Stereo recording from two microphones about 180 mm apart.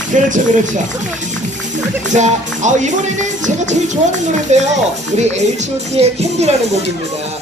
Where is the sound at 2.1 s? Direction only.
40° right (ahead or behind).